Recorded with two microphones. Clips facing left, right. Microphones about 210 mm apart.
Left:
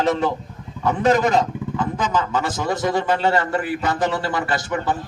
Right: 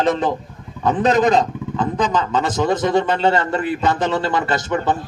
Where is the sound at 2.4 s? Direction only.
20° right (ahead or behind).